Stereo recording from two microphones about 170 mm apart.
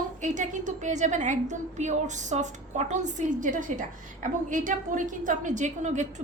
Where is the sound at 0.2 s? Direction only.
45° right (ahead or behind).